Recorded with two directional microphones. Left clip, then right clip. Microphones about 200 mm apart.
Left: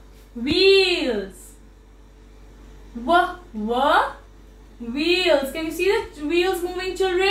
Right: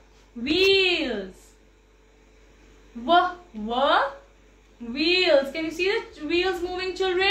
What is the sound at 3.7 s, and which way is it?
A woman's voice, centre (ahead or behind).